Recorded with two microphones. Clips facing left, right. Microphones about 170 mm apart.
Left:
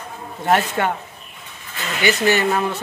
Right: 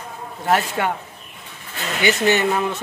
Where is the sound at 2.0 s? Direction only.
20° right (ahead or behind).